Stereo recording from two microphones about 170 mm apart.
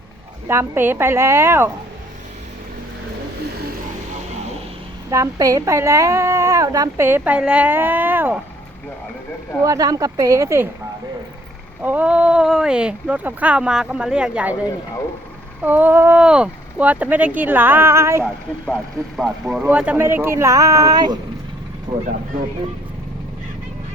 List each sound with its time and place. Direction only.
0.4 s a woman's voice: 15° right (ahead or behind)
5.1 s a woman's voice: 20° right (ahead or behind)
9.6 s speech: 20° right (ahead or behind)
11.8 s speech: 10° right (ahead or behind)
15.6 s a woman's voice: 10° right (ahead or behind)
18.6 s a woman's voice: centre (ahead or behind); by 22.0 s 25° right (ahead or behind)